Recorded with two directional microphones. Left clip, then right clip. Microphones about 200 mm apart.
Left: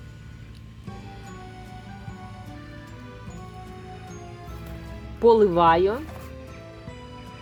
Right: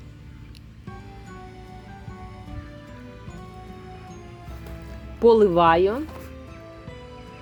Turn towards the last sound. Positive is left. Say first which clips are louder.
# right 1 dB
turn(degrees=-15)  # may be behind; listen again after turning